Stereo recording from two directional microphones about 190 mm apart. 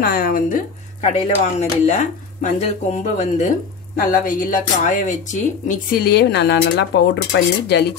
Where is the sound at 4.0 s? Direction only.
45° left (ahead or behind).